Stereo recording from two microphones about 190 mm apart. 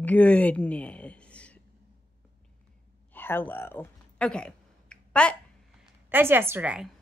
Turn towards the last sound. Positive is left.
turn(degrees=-5)  # may be behind; listen again after turning